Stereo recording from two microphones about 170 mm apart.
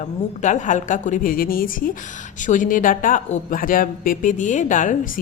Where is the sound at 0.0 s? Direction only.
45° left (ahead or behind).